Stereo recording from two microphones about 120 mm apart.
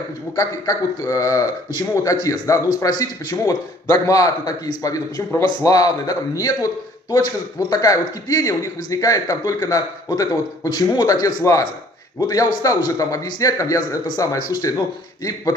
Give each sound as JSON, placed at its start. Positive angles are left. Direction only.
{"t": 0.4, "sound": "speech", "side_deg": 30}
{"t": 7.7, "sound": "speech", "side_deg": 30}